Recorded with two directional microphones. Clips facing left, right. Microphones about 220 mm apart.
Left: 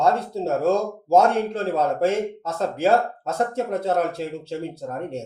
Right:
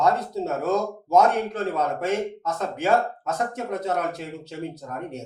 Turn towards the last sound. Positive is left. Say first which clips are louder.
# left 4 dB
turn(degrees=30)  # may be behind; listen again after turning